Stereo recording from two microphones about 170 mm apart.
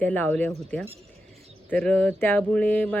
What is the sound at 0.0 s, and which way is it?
A woman's voice, 10° left (ahead or behind).